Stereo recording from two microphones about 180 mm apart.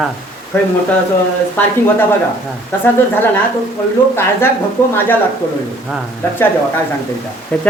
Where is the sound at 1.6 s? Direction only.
10° left (ahead or behind).